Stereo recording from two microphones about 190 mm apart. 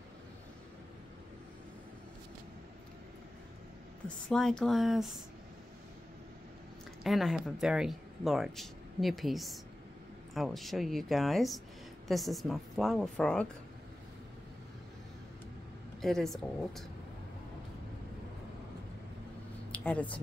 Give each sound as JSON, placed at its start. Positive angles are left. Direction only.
{"t": 4.3, "sound": "speech", "side_deg": 5}
{"t": 7.0, "sound": "speech", "side_deg": 0}
{"t": 16.0, "sound": "speech", "side_deg": 0}
{"t": 19.7, "sound": "a sound", "side_deg": 5}